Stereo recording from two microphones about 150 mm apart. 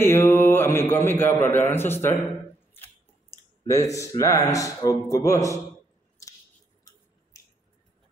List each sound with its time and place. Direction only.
0.0 s a man's voice: 15° left (ahead or behind)
3.3 s clicking: 20° left (ahead or behind)
3.9 s a man's voice: 20° left (ahead or behind)
7.3 s finger snapping: 20° left (ahead or behind)